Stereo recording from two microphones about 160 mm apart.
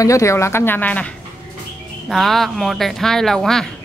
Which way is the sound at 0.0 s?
20° left (ahead or behind).